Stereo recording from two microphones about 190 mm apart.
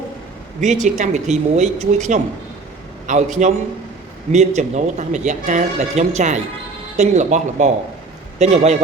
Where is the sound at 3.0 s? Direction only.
40° right (ahead or behind).